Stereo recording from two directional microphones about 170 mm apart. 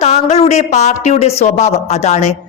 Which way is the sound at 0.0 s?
40° left (ahead or behind).